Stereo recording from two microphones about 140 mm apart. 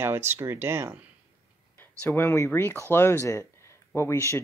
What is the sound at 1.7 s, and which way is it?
Speech, 15° left (ahead or behind).